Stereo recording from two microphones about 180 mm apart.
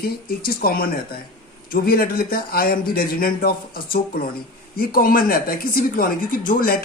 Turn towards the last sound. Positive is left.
turn(degrees=50)  # may be behind; listen again after turning